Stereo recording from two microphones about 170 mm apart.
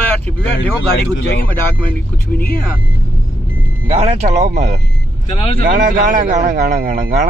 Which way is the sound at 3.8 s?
35° right (ahead or behind).